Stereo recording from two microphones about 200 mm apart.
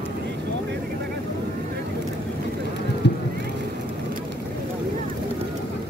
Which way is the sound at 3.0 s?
60° left (ahead or behind).